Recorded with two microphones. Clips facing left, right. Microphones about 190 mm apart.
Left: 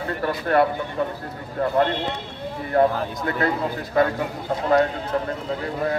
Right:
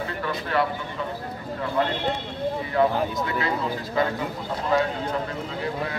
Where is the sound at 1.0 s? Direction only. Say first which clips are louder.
Left 6 dB; 50° left (ahead or behind).